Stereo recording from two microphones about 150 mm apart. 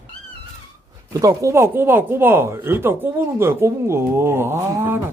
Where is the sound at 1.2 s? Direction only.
20° right (ahead or behind).